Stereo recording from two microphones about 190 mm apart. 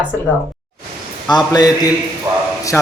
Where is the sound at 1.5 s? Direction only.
20° left (ahead or behind).